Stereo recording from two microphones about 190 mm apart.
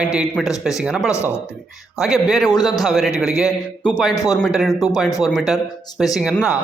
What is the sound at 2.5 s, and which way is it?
Speech, 20° left (ahead or behind).